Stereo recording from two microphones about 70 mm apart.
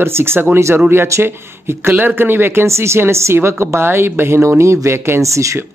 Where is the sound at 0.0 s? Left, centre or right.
Right.